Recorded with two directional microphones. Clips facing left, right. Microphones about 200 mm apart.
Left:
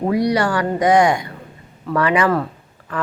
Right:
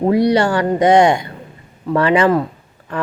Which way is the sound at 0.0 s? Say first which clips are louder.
Right 4 dB; 25° right (ahead or behind).